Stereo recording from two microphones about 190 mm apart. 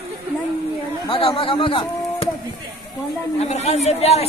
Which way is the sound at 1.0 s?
30° left (ahead or behind).